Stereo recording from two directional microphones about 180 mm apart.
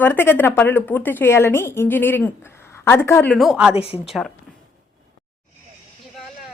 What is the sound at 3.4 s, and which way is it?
Speech, centre (ahead or behind).